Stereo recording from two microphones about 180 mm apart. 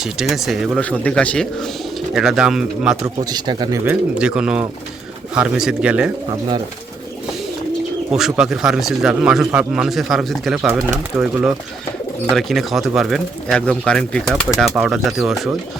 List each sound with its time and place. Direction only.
0.0 s speech: centre (ahead or behind)
3.2 s speech: 25° right (ahead or behind)
3.8 s speech: 5° right (ahead or behind)
8.1 s speech: centre (ahead or behind)